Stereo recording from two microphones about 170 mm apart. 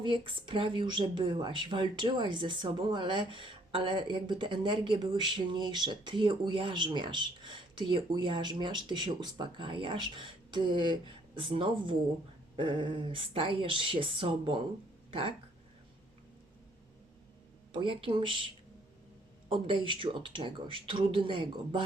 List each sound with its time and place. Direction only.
0.0 s speech: 30° right (ahead or behind)
17.7 s speech: 30° right (ahead or behind)
19.5 s speech: 30° right (ahead or behind)